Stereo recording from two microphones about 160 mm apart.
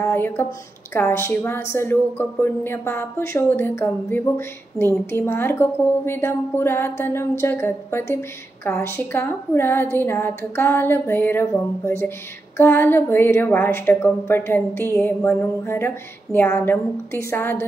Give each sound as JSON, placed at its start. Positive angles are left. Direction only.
{"t": 0.0, "sound": "speech", "side_deg": 15}